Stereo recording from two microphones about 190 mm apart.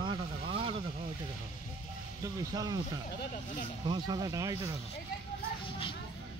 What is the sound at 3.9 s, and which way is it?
Speech, 20° right (ahead or behind).